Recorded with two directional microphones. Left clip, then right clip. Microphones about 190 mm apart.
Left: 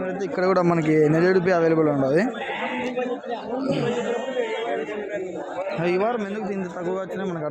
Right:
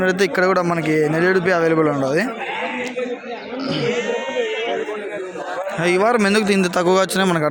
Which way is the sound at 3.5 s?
Centre (ahead or behind).